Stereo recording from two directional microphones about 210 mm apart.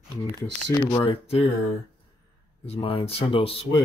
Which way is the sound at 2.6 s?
25° left (ahead or behind).